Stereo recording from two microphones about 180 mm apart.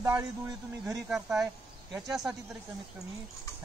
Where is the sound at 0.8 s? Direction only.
5° right (ahead or behind).